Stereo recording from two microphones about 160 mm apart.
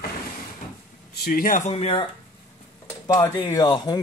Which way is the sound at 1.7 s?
35° left (ahead or behind).